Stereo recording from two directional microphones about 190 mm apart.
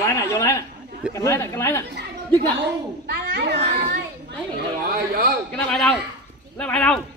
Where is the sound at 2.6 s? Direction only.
60° right (ahead or behind).